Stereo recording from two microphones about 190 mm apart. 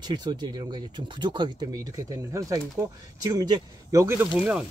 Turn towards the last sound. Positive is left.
turn(degrees=-5)  # may be behind; listen again after turning